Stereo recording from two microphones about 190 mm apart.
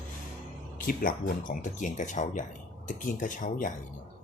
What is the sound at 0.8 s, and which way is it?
Speech, 50° left (ahead or behind).